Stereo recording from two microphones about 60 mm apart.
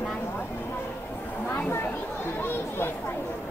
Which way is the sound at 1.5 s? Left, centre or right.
Left.